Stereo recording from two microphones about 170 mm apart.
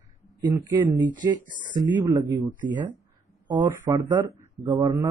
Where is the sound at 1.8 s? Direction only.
15° right (ahead or behind).